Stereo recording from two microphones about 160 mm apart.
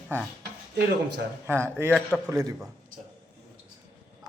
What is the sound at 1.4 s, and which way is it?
Speech, 15° right (ahead or behind).